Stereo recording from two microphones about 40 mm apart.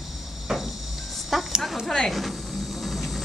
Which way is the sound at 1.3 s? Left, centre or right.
Centre.